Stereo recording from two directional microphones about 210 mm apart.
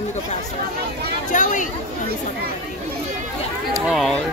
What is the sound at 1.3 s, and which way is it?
Speech, 35° left (ahead or behind).